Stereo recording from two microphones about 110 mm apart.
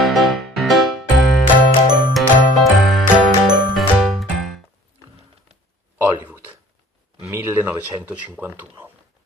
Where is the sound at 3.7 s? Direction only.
Centre (ahead or behind).